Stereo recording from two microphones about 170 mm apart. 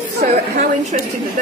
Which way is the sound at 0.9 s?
45° right (ahead or behind).